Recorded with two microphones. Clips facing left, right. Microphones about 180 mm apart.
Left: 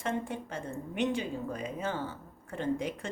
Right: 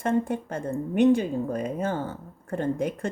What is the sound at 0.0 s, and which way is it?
A woman's voice, 50° right (ahead or behind).